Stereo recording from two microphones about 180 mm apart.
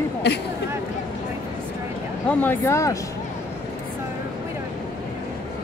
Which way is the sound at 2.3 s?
10° left (ahead or behind).